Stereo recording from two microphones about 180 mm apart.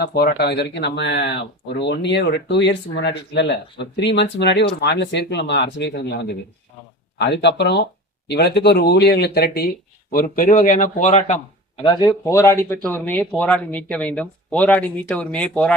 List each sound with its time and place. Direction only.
0.0 s speech: 60° left (ahead or behind)
10.1 s speech: 50° left (ahead or behind)
11.8 s speech: 25° left (ahead or behind)
12.2 s speech: 15° left (ahead or behind)